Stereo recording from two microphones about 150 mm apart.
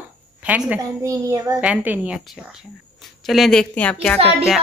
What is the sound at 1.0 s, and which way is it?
Speech, 20° right (ahead or behind).